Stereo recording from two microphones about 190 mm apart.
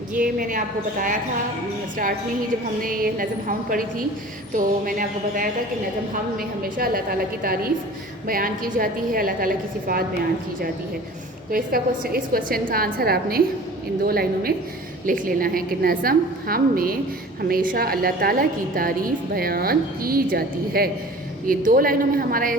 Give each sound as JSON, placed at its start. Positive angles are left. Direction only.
{"t": 0.2, "sound": "a woman's voice", "side_deg": -45}
{"t": 2.8, "sound": "a woman's voice", "side_deg": -50}
{"t": 6.6, "sound": "a woman's voice", "side_deg": -50}
{"t": 11.5, "sound": "a woman's voice", "side_deg": -50}